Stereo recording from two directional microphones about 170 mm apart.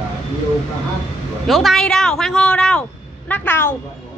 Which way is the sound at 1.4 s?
Centre (ahead or behind).